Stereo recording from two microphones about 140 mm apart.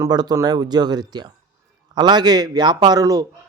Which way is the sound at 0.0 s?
30° right (ahead or behind).